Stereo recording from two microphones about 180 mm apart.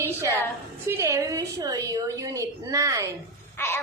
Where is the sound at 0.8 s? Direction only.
15° right (ahead or behind).